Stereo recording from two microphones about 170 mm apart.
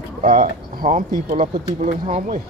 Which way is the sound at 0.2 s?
55° right (ahead or behind).